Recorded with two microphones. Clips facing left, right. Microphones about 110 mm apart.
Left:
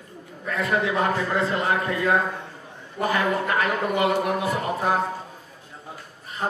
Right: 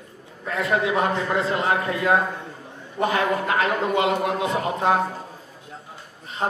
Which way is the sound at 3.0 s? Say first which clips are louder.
Right 1 dB; 25° right (ahead or behind).